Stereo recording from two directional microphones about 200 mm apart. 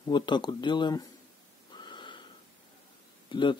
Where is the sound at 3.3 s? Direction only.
25° left (ahead or behind).